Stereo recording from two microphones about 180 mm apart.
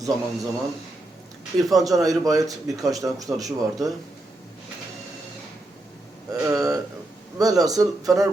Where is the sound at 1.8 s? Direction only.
20° right (ahead or behind).